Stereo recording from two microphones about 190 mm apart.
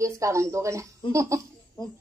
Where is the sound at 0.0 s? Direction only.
15° right (ahead or behind).